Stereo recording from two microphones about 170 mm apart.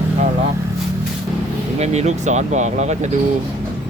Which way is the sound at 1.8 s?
40° right (ahead or behind).